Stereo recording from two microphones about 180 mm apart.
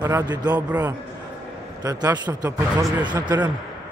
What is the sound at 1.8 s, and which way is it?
A man's voice, 20° right (ahead or behind).